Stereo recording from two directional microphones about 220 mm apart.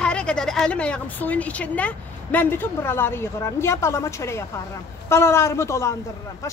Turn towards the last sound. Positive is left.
turn(degrees=15)  # may be behind; listen again after turning